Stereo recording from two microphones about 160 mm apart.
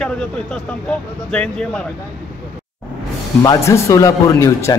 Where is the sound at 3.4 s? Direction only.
20° left (ahead or behind).